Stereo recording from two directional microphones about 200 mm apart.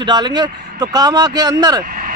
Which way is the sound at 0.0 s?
20° right (ahead or behind).